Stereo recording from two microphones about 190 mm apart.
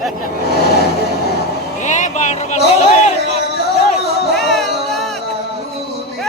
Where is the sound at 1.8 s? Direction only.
40° left (ahead or behind).